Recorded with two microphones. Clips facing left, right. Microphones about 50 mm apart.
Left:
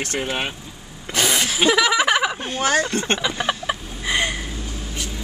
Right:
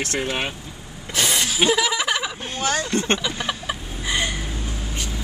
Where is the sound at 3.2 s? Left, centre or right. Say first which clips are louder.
Left 3 dB; centre.